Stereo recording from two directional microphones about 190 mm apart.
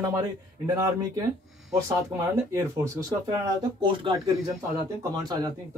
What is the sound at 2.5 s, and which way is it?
Speech, 20° right (ahead or behind).